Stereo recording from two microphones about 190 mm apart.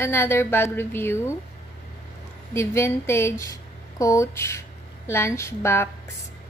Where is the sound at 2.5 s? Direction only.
15° left (ahead or behind).